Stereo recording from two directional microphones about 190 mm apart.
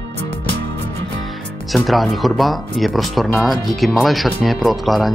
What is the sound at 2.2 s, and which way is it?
Speech, centre (ahead or behind).